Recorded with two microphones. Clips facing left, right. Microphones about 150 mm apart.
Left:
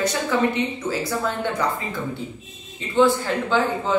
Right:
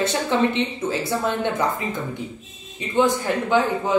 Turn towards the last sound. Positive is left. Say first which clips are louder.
# right 1 dB
turn(degrees=-15)  # may be behind; listen again after turning